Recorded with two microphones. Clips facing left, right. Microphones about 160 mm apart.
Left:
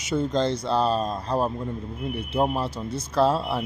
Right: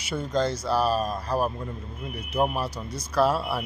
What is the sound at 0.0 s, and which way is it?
Speech, 25° left (ahead or behind).